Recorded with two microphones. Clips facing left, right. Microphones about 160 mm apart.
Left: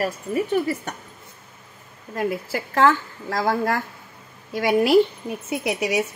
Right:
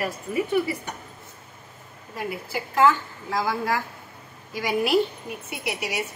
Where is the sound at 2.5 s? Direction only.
85° left.